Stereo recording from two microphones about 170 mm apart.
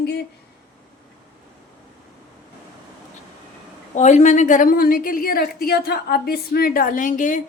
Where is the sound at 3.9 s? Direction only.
45° left (ahead or behind).